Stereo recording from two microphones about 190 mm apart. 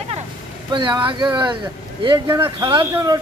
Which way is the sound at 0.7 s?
25° right (ahead or behind).